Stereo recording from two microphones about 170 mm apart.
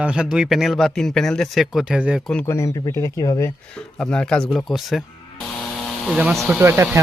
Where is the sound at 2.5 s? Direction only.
15° left (ahead or behind).